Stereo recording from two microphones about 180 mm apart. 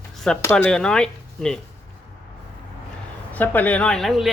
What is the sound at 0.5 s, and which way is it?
Speech, 5° left (ahead or behind).